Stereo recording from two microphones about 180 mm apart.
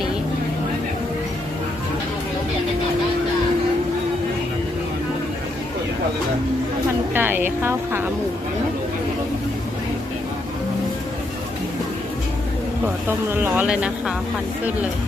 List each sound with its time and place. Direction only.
7.1 s speech: 10° right (ahead or behind)
13.1 s speech: 10° right (ahead or behind)